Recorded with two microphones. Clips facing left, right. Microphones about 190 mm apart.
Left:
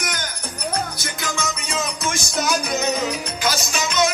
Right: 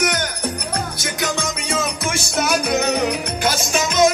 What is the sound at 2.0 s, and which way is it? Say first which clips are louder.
Music: even; 60° right (ahead or behind).